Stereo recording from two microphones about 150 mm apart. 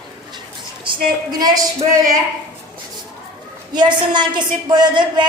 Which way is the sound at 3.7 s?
30° right (ahead or behind).